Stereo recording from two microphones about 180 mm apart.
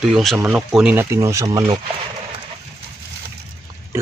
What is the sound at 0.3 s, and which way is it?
Speech, 5° right (ahead or behind).